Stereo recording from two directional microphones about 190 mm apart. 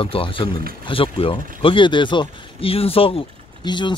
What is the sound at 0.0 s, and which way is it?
Speech, 25° left (ahead or behind).